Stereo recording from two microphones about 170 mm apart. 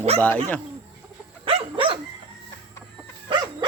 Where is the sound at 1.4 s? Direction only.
30° right (ahead or behind).